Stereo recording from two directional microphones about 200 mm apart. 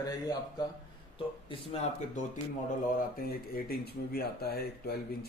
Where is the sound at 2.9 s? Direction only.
45° left (ahead or behind).